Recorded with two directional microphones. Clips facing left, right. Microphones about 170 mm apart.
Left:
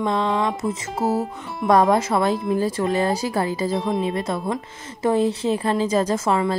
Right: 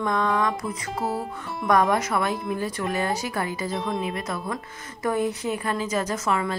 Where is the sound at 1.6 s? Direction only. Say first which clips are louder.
Left 4 dB; 30° left (ahead or behind).